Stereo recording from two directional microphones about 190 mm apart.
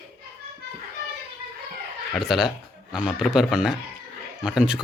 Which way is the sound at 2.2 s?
Centre (ahead or behind).